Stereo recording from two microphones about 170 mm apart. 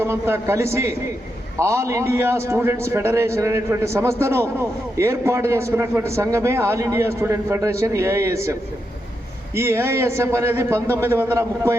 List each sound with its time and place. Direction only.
0.0 s a man's voice: 15° right (ahead or behind)
9.6 s a man's voice: 15° right (ahead or behind)